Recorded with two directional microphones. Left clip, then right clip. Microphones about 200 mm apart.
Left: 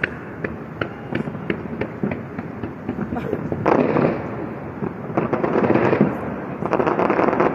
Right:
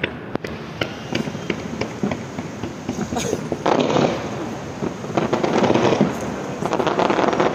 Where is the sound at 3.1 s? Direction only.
65° right (ahead or behind).